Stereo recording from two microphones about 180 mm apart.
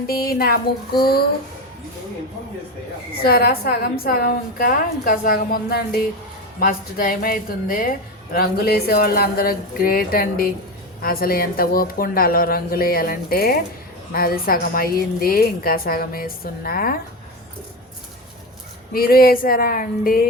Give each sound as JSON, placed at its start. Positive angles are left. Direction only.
{"t": 0.1, "sound": "a woman's voice", "side_deg": 55}
{"t": 3.2, "sound": "a woman's voice", "side_deg": 55}
{"t": 18.9, "sound": "a sound", "side_deg": 55}